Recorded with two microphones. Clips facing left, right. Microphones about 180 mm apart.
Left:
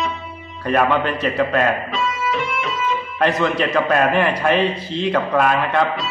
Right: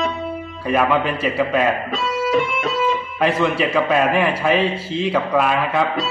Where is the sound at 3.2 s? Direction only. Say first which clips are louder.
Even; 5° right (ahead or behind).